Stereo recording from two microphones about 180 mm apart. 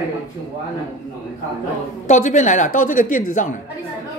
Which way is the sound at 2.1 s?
45° left (ahead or behind).